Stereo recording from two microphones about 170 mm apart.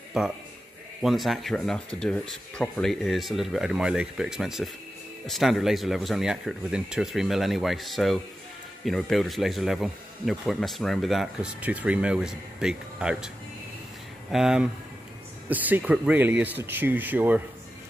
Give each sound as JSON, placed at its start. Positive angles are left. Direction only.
{"t": 0.2, "sound": "speech", "side_deg": -5}
{"t": 14.3, "sound": "speech", "side_deg": -5}